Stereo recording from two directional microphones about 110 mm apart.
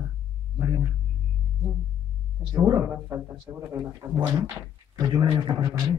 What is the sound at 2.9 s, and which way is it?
Speech, 20° right (ahead or behind).